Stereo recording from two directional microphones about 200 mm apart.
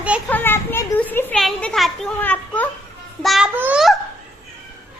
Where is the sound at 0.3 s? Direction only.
10° left (ahead or behind).